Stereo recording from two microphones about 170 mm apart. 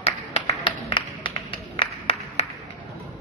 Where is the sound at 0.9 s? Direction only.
30° left (ahead or behind).